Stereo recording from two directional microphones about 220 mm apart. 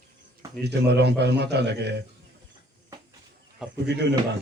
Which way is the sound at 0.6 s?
50° right (ahead or behind).